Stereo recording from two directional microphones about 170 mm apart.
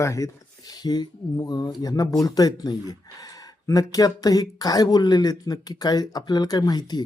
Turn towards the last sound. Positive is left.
turn(degrees=25)  # may be behind; listen again after turning